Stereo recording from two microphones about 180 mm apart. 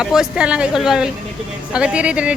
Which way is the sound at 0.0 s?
5° right (ahead or behind).